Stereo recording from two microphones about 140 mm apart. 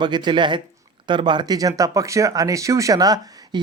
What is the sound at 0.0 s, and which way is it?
Speech, 30° right (ahead or behind).